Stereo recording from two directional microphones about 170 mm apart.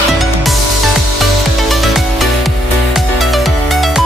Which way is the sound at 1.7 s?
Centre (ahead or behind).